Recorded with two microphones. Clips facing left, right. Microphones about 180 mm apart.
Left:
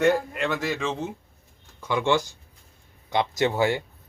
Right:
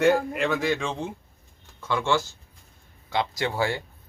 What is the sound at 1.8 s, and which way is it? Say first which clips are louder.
Speech: left 2 dB; 20° left (ahead or behind).